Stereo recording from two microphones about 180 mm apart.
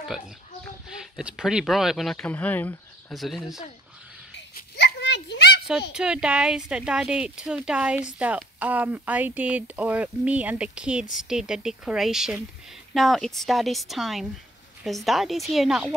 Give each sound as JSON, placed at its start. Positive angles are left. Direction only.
{"t": 0.8, "sound": "speech", "side_deg": -5}
{"t": 3.1, "sound": "speech", "side_deg": 0}
{"t": 4.6, "sound": "a sound", "side_deg": 70}
{"t": 5.9, "sound": "speech", "side_deg": -5}